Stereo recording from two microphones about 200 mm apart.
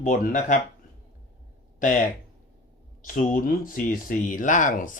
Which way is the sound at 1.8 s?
40° left (ahead or behind).